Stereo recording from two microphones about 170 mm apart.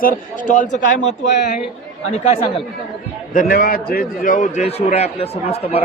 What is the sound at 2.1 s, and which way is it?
Speech, 35° left (ahead or behind).